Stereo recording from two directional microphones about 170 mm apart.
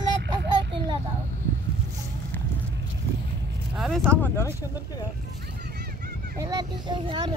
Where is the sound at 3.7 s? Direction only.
Centre (ahead or behind).